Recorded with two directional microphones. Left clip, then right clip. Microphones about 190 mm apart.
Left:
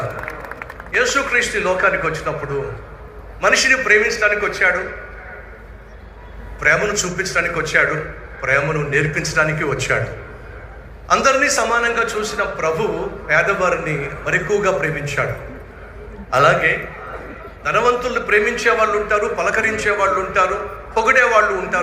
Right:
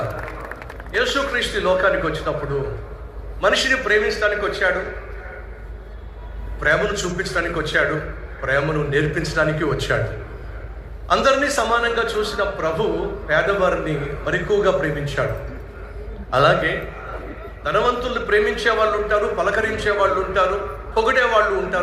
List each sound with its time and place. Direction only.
0.9 s a man's voice: 25° left (ahead or behind)
3.4 s a man's voice: 30° left (ahead or behind)
6.6 s a man's voice: 30° left (ahead or behind)
11.1 s a man's voice: 30° left (ahead or behind)
16.3 s a man's voice: 30° left (ahead or behind)